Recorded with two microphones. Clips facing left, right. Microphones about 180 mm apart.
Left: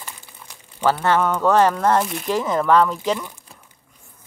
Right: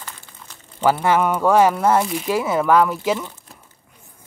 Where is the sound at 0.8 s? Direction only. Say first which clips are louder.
Right 1 dB; 10° right (ahead or behind).